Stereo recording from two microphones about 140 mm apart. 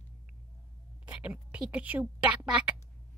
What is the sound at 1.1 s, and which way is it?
A woman's voice, 10° right (ahead or behind).